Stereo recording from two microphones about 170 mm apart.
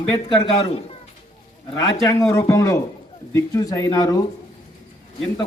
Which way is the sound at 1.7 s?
20° left (ahead or behind).